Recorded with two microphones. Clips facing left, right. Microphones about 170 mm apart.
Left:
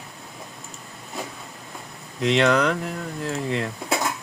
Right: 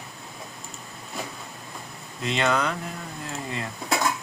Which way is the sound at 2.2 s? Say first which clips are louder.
Left 5 dB; 80° left.